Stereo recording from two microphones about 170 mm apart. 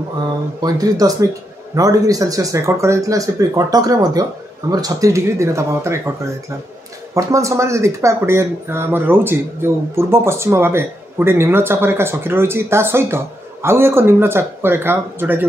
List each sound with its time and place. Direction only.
0.6 s speech: 20° right (ahead or behind)
7.2 s speech: 20° right (ahead or behind)